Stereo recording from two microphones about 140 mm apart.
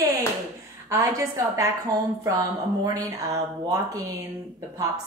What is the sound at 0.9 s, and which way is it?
Speech, 25° right (ahead or behind).